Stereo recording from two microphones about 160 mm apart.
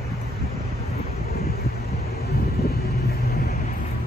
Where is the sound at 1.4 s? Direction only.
75° left (ahead or behind).